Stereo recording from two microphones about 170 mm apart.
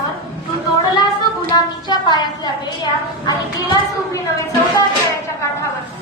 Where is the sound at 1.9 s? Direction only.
25° left (ahead or behind).